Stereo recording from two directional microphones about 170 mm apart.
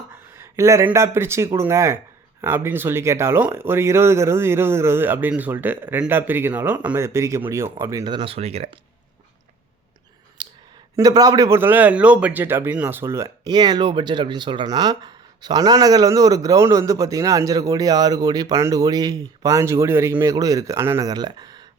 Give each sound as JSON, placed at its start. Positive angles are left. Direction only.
{"t": 0.3, "sound": "a man's voice", "side_deg": -15}
{"t": 10.4, "sound": "a sound", "side_deg": -25}
{"t": 10.9, "sound": "a man's voice", "side_deg": -20}